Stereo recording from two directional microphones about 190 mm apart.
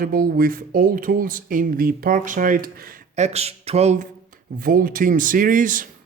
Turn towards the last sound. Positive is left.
turn(degrees=-45)  # may be behind; listen again after turning